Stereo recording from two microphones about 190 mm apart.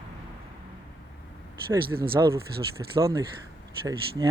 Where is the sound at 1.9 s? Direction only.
15° right (ahead or behind).